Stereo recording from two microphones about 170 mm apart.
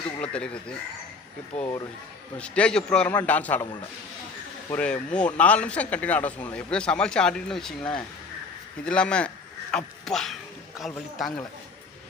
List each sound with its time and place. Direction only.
0.2 s speech: 5° left (ahead or behind)
1.5 s a man's voice: 15° left (ahead or behind)
4.7 s a man's voice: 5° left (ahead or behind)